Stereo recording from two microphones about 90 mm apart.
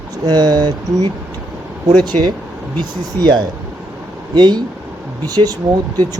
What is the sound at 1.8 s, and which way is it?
Speech, 50° right (ahead or behind).